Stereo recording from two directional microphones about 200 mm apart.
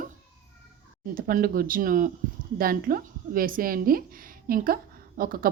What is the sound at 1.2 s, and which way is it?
A woman's voice, 45° right (ahead or behind).